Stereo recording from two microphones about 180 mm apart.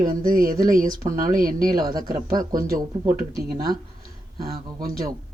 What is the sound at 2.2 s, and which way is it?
Speech, 20° right (ahead or behind).